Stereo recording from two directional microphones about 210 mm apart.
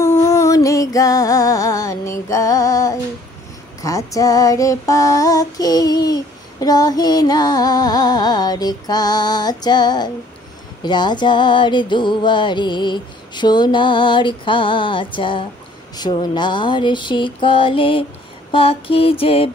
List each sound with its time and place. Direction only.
0.0 s music: 15° left (ahead or behind)
3.8 s female singing: 15° left (ahead or behind)
6.6 s music: 15° left (ahead or behind)